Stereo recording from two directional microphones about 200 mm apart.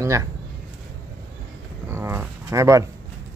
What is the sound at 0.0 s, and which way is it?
Speech, 15° right (ahead or behind).